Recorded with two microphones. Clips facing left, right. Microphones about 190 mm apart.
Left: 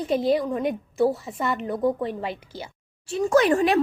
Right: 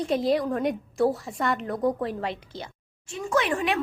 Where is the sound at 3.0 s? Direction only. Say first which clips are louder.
Left 7 dB; 35° left (ahead or behind).